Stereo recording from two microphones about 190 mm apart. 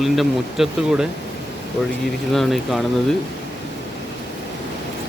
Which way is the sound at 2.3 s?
Centre (ahead or behind).